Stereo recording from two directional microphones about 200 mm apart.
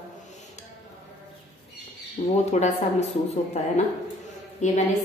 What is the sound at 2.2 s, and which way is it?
A woman's voice, 30° left (ahead or behind).